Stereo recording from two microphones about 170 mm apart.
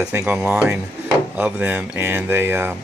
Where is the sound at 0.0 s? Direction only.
5° right (ahead or behind).